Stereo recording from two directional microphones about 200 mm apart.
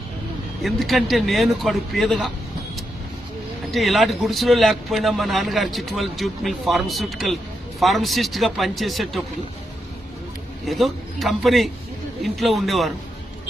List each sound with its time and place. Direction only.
0.6 s speech: centre (ahead or behind)
3.7 s speech: centre (ahead or behind)
10.7 s speech: centre (ahead or behind)